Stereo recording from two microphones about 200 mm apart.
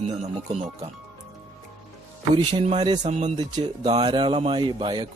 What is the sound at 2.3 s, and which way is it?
Speech, 30° right (ahead or behind).